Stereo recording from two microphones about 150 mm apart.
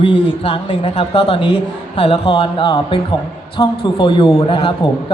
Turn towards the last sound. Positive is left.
turn(degrees=35)  # may be behind; listen again after turning